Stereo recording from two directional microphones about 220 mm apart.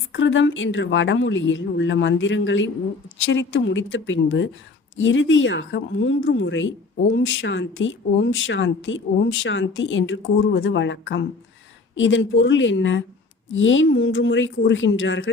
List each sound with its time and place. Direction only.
0.1 s speech: 60° left (ahead or behind)